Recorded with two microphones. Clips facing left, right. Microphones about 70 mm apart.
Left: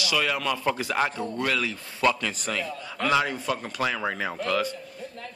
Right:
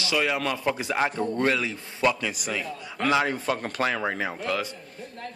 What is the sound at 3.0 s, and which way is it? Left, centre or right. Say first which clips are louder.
Speech: right 1 dB; right.